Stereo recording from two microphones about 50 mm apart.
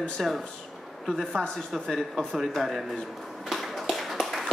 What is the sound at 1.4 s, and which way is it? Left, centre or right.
Speech, centre.